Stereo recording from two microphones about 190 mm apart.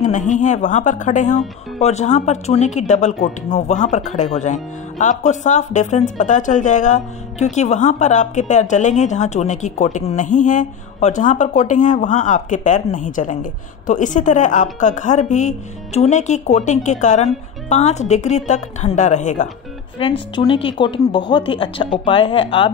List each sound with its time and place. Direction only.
0.0 s speech: 40° left (ahead or behind)
20.0 s speech: 25° left (ahead or behind)